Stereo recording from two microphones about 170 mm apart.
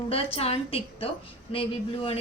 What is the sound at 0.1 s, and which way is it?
Speech, 35° left (ahead or behind).